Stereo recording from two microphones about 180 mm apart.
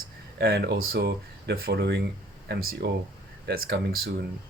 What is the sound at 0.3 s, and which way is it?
Speech, 65° right (ahead or behind).